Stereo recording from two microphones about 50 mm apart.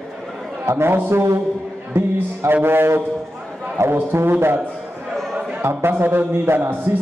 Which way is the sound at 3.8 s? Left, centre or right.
Right.